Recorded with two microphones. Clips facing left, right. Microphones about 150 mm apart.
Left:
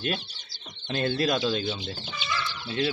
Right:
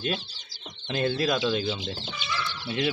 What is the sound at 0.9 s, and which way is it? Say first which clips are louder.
Speech: even; centre (ahead or behind).